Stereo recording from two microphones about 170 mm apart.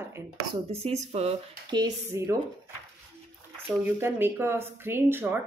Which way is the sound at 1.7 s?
25° right (ahead or behind).